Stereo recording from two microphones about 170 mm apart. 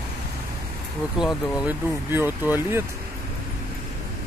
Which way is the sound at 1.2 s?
10° right (ahead or behind).